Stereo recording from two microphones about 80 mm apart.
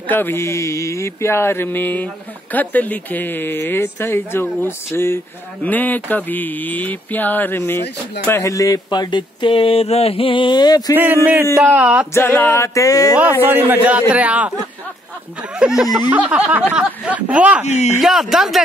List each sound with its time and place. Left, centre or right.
0.0 s speech: left
5.6 s speech: left
8.9 s a sound: left
10.2 s mantra: left
11.0 s a man's voice: right
12.3 s speech: left
12.5 s speech: left
13.2 s a man's voice: right
15.5 s speech: centre
16.1 s a man's voice: centre
18.0 s a man's voice: centre